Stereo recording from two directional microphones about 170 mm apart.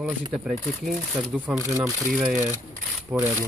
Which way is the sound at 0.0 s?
Centre (ahead or behind).